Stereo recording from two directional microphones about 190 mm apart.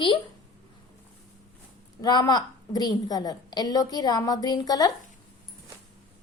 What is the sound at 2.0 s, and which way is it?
A woman's voice, 20° left (ahead or behind).